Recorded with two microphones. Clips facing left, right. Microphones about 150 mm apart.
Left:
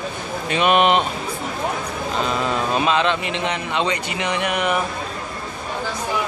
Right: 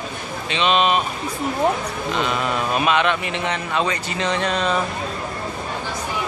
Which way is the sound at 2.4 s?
25° left (ahead or behind).